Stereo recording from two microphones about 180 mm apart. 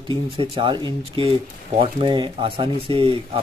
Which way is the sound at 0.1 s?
30° right (ahead or behind).